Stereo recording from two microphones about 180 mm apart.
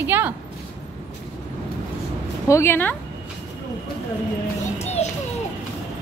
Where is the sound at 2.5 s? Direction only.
15° left (ahead or behind).